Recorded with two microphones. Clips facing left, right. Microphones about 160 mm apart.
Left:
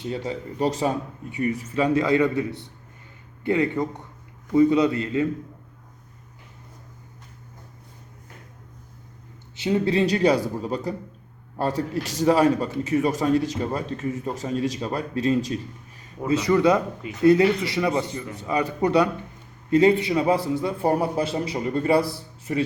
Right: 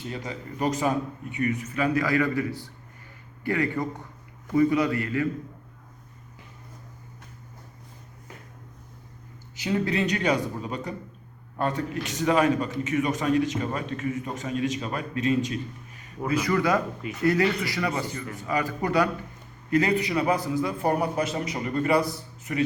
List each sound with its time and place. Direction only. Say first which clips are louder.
0.1 s a man's voice: left 8 dB; 30° left (ahead or behind)
9.6 s a man's voice: left 4 dB; 25° left (ahead or behind)
16.2 s a man's voice: left 5 dB; 25° left (ahead or behind)